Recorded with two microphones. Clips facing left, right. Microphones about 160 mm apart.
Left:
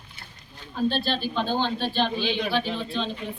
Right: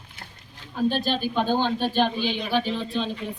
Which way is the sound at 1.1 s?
10° right (ahead or behind).